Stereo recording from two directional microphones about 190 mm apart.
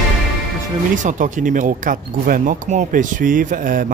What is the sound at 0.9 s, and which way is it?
Speech, 40° right (ahead or behind).